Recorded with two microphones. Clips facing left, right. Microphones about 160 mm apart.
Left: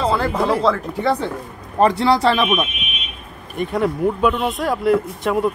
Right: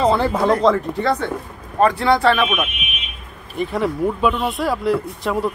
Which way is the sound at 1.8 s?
35° left (ahead or behind).